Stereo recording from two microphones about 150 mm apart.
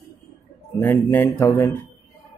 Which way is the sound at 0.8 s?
15° left (ahead or behind).